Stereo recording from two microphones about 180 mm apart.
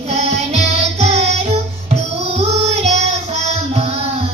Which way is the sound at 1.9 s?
35° right (ahead or behind).